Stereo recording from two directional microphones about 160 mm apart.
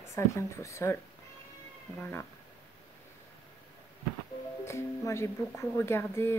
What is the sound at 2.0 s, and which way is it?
Speech, 15° left (ahead or behind).